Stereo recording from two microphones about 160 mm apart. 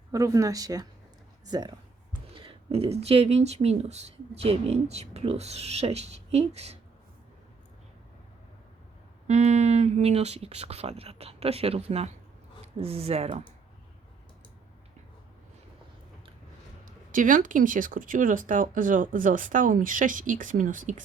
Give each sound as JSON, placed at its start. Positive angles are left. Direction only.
{"t": 0.1, "sound": "speech", "side_deg": -20}
{"t": 9.2, "sound": "speech", "side_deg": -45}
{"t": 16.8, "sound": "speech", "side_deg": -55}